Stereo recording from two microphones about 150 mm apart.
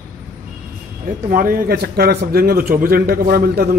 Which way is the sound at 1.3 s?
70° right (ahead or behind).